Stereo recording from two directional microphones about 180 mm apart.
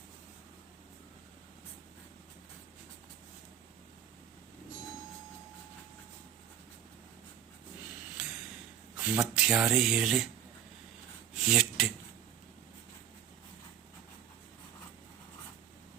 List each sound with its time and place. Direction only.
8.2 s a sound: 5° right (ahead or behind)
9.0 s speech: 5° right (ahead or behind)
11.4 s speech: centre (ahead or behind)